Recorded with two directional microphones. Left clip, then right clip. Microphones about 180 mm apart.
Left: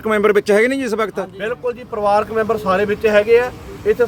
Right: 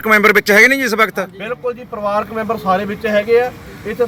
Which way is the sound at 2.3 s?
35° left (ahead or behind).